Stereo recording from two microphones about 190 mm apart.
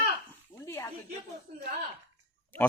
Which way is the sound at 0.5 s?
15° left (ahead or behind).